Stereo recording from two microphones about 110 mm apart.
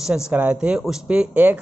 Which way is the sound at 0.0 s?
10° right (ahead or behind).